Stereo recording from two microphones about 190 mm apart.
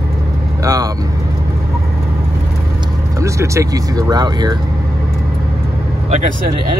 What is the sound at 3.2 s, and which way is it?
Speech, 15° right (ahead or behind).